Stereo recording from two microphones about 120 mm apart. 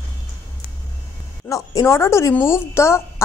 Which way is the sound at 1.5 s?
25° left (ahead or behind).